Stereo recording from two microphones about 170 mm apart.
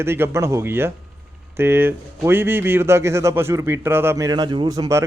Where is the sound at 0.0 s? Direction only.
15° right (ahead or behind).